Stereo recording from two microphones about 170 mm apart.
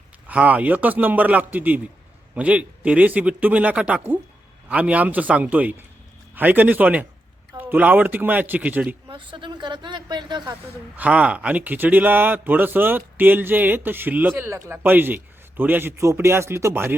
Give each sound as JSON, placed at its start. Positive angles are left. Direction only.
{"t": 0.3, "sound": "a man's voice", "side_deg": -10}
{"t": 9.0, "sound": "speech", "side_deg": -30}
{"t": 10.9, "sound": "a man's voice", "side_deg": -10}